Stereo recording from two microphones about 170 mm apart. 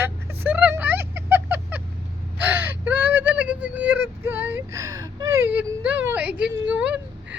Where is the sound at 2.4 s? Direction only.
10° right (ahead or behind).